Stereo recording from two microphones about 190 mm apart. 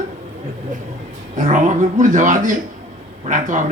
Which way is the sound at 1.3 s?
40° right (ahead or behind).